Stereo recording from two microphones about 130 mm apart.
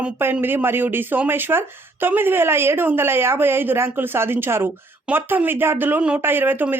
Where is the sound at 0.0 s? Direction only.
10° right (ahead or behind).